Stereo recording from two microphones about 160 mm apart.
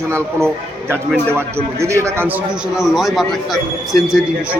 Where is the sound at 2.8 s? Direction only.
Centre (ahead or behind).